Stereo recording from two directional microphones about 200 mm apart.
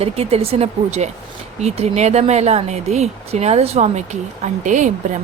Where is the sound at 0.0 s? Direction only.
30° right (ahead or behind).